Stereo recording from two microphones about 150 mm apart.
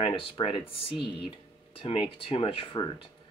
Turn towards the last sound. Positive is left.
turn(degrees=35)  # may be behind; listen again after turning